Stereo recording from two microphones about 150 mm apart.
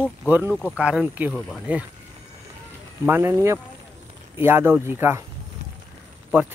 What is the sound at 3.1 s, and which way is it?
Speech, 15° right (ahead or behind).